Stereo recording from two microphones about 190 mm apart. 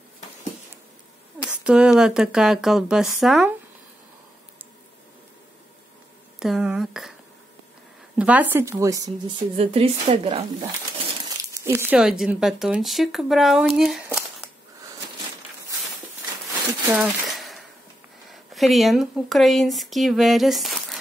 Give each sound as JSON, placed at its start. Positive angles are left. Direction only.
{"t": 1.6, "sound": "speech", "side_deg": -5}
{"t": 6.4, "sound": "speech", "side_deg": 0}
{"t": 8.2, "sound": "speech", "side_deg": -10}
{"t": 9.6, "sound": "a woman's voice", "side_deg": -30}
{"t": 11.2, "sound": "speech", "side_deg": -15}
{"t": 16.9, "sound": "a sound", "side_deg": -5}
{"t": 18.3, "sound": "speech", "side_deg": 0}